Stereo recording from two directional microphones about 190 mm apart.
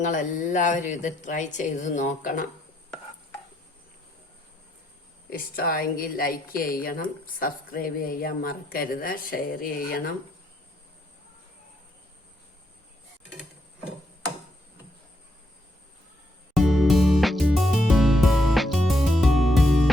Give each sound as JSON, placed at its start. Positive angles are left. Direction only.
{"t": 0.0, "sound": "a woman's voice", "side_deg": 40}
{"t": 5.3, "sound": "a woman's voice", "side_deg": 50}
{"t": 16.6, "sound": "music", "side_deg": 0}